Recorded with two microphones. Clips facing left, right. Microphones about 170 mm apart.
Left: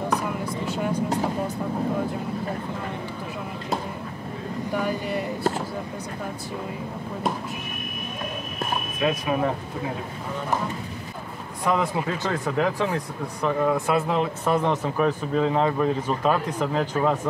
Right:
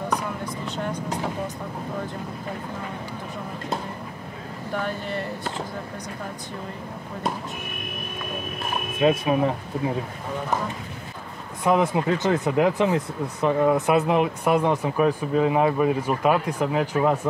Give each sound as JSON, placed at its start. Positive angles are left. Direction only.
{"t": 4.7, "sound": "speech", "side_deg": 10}
{"t": 9.0, "sound": "speech", "side_deg": -25}
{"t": 11.6, "sound": "speech", "side_deg": -20}